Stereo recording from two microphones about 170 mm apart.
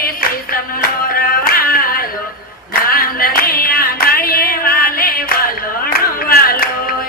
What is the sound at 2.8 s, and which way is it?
Clapping, 60° left (ahead or behind).